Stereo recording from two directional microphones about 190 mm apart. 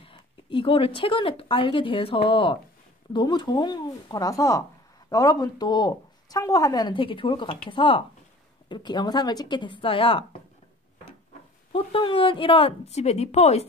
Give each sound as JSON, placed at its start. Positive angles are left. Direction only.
{"t": 0.0, "sound": "speech", "side_deg": 25}
{"t": 11.7, "sound": "speech", "side_deg": 30}